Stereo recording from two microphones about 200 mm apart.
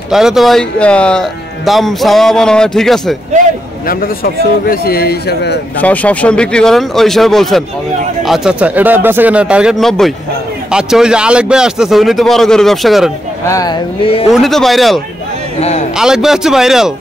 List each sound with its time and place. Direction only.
0.1 s a man's voice: centre (ahead or behind)
3.8 s speech: 45° left (ahead or behind)
5.8 s a man's voice: 5° left (ahead or behind)
13.5 s speech: 20° left (ahead or behind)
14.3 s a man's voice: centre (ahead or behind)
16.0 s a man's voice: centre (ahead or behind)